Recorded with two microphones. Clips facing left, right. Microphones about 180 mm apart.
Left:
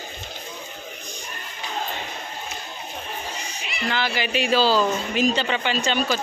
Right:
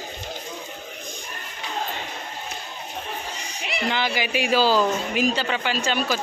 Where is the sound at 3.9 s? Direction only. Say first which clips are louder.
Left 2 dB; 15° right (ahead or behind).